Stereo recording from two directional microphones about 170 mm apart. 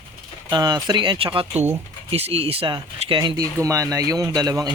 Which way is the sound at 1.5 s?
15° right (ahead or behind).